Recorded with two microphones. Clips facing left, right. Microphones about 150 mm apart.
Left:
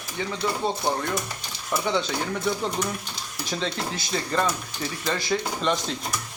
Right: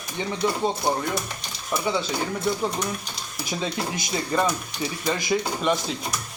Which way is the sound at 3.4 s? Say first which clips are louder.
Right 1 dB; 10° right (ahead or behind).